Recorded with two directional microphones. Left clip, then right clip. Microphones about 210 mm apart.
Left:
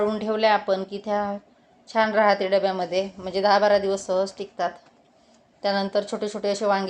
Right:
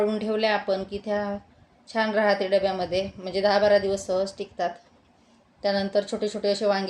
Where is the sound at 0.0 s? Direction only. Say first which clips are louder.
Left 2 dB; centre (ahead or behind).